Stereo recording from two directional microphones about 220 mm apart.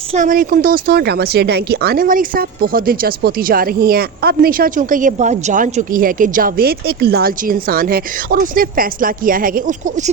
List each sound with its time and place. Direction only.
0.1 s a woman's voice: 35° right (ahead or behind)